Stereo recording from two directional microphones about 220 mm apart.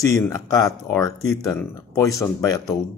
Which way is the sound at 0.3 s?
15° left (ahead or behind).